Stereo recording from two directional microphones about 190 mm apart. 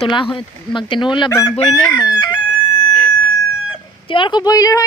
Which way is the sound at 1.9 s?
25° left (ahead or behind).